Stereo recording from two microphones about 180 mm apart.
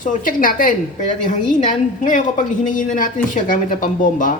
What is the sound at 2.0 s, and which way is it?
Speech, 45° left (ahead or behind).